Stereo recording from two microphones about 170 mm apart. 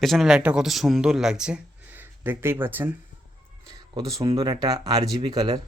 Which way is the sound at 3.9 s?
20° right (ahead or behind).